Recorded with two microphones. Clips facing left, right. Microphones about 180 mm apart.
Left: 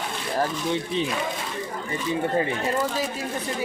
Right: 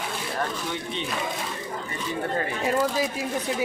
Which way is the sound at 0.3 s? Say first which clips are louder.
Left 7 dB; 30° left (ahead or behind).